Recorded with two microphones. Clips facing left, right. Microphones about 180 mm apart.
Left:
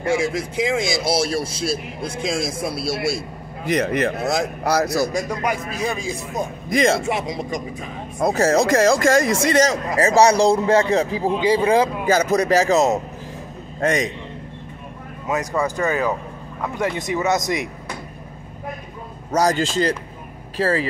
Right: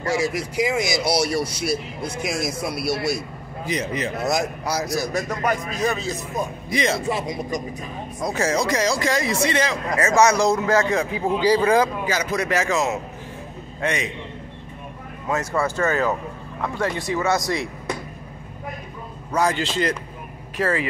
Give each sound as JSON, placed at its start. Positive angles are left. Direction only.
{"t": 0.3, "sound": "speech", "side_deg": 25}
{"t": 3.6, "sound": "speech", "side_deg": 60}
{"t": 5.1, "sound": "speech", "side_deg": 10}
{"t": 6.7, "sound": "speech", "side_deg": 50}
{"t": 7.1, "sound": "speech", "side_deg": 20}
{"t": 8.2, "sound": "a man's voice", "side_deg": 45}
{"t": 12.1, "sound": "a man's voice", "side_deg": 45}
{"t": 15.2, "sound": "speech", "side_deg": 15}
{"t": 19.3, "sound": "a man's voice", "side_deg": 40}